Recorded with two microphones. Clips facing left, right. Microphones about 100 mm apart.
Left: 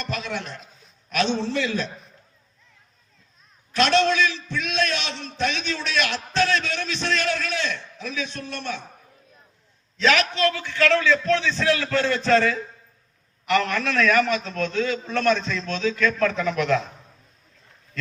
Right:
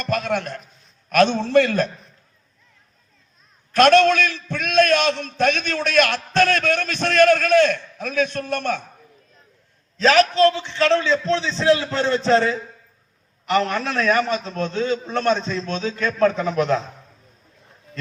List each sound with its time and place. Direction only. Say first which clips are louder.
0.0 s a man's voice: right 7 dB; 50° right (ahead or behind)
3.7 s a man's voice: right 6 dB; 50° right (ahead or behind)
10.0 s a man's voice: right 6 dB; 35° right (ahead or behind)
10.5 s a man's voice: right 2 dB; 25° right (ahead or behind)